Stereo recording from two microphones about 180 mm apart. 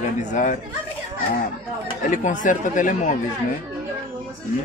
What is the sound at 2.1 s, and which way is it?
Speech, 45° left (ahead or behind).